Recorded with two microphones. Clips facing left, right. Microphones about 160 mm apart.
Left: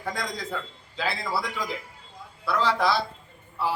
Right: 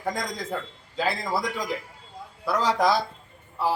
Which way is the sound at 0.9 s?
45° right (ahead or behind).